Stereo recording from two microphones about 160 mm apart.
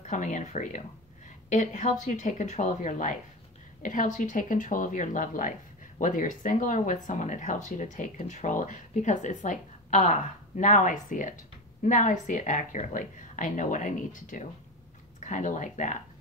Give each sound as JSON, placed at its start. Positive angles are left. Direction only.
{"t": 0.0, "sound": "speech", "side_deg": 50}